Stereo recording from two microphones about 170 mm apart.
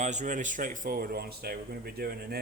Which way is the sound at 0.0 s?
45° right (ahead or behind).